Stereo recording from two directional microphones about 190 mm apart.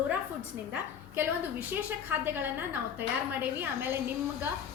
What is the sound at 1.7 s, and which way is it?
A woman's voice, 10° right (ahead or behind).